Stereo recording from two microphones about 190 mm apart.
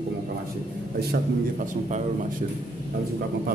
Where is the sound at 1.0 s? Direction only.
50° right (ahead or behind).